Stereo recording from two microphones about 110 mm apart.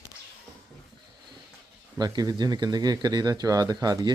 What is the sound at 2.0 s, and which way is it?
Speech, 35° right (ahead or behind).